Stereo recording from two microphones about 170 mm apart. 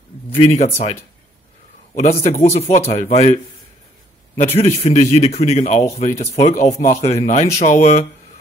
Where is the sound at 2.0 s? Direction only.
40° left (ahead or behind).